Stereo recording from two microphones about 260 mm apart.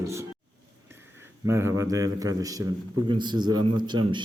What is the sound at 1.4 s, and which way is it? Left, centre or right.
A man's voice, centre.